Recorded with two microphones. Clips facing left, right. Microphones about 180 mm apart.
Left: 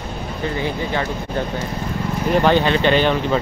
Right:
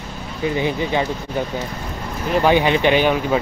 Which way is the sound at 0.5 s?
20° right (ahead or behind).